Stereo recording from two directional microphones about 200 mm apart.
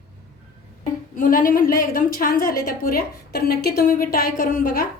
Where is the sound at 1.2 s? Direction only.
45° left (ahead or behind).